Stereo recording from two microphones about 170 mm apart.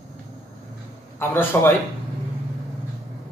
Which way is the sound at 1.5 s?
15° left (ahead or behind).